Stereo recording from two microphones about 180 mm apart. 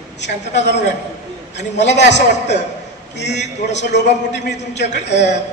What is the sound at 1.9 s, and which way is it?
A man's voice, 75° left (ahead or behind).